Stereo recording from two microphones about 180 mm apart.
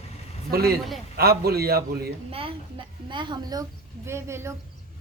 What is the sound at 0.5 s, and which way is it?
A man's voice, 60° right (ahead or behind).